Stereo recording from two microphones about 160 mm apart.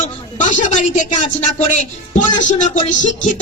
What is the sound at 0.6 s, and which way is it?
Speech, 50° left (ahead or behind).